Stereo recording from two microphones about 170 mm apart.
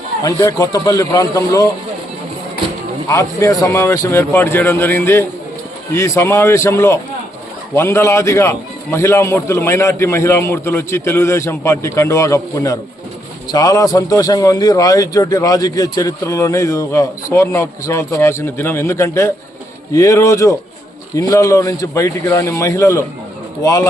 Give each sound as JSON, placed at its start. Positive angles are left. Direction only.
{"t": 0.2, "sound": "a man's voice", "side_deg": 20}
{"t": 3.1, "sound": "a man's voice", "side_deg": 20}